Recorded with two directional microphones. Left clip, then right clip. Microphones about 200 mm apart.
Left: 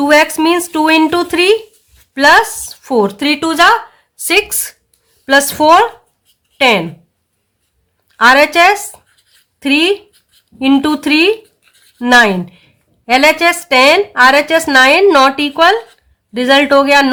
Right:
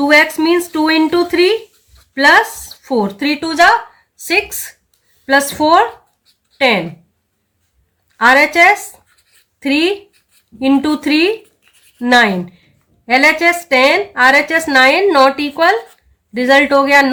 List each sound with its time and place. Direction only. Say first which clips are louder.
0.0 s speech: left 1 dB; 45° left (ahead or behind)
8.1 s speech: left 2 dB; 40° left (ahead or behind)
11.9 s a sound: left 2 dB; 40° left (ahead or behind)
13.4 s speech: left 2 dB; 40° left (ahead or behind)